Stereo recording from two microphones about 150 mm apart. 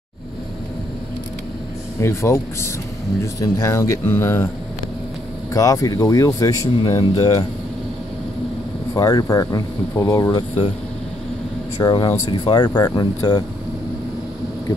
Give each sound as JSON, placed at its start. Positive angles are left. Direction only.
{"t": 2.0, "sound": "speech", "side_deg": 20}
{"t": 5.5, "sound": "speech", "side_deg": 20}
{"t": 8.9, "sound": "speech", "side_deg": 25}
{"t": 11.8, "sound": "speech", "side_deg": 30}